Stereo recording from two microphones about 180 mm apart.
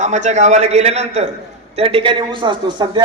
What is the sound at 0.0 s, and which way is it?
A man's voice, 40° right (ahead or behind).